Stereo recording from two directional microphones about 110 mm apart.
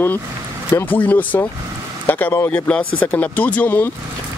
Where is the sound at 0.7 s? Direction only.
15° left (ahead or behind).